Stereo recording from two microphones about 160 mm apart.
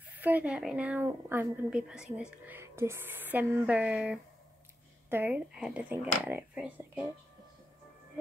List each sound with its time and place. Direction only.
0.2 s speech: 10° right (ahead or behind)